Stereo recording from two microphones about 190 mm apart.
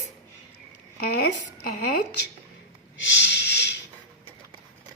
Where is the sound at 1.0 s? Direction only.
55° left (ahead or behind).